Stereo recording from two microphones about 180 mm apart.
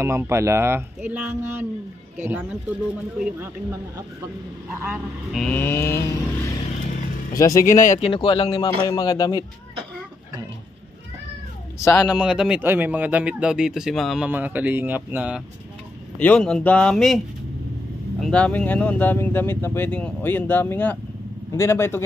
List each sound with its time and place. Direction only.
0.0 s speech: 15° right (ahead or behind)
3.2 s speech: 5° right (ahead or behind)
4.8 s speech: 5° right (ahead or behind); by 7.9 s 15° left (ahead or behind)
7.9 s speech: 30° left (ahead or behind)
11.8 s speech: 15° left (ahead or behind)
12.1 s speech: 5° right (ahead or behind)
16.2 s speech: 5° left (ahead or behind)
18.2 s speech: 5° left (ahead or behind)